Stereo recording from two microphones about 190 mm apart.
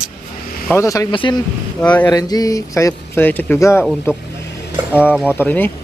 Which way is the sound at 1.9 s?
10° left (ahead or behind).